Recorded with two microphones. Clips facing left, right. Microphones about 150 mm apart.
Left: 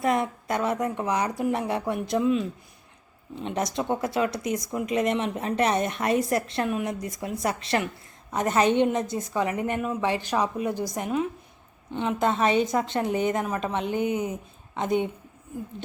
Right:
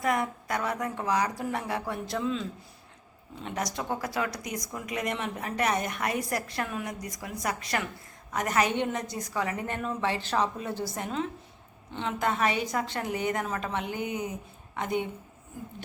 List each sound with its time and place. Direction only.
0.0 s a woman's voice: 25° left (ahead or behind)